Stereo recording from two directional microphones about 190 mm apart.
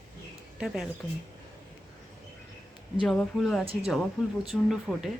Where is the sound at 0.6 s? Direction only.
5° right (ahead or behind).